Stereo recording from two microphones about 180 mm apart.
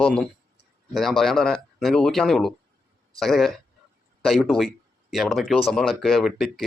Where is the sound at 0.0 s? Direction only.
5° left (ahead or behind).